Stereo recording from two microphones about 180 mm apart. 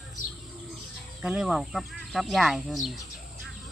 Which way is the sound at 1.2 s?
5° right (ahead or behind).